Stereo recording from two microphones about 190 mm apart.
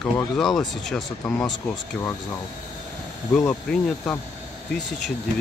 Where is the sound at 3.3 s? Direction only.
10° left (ahead or behind).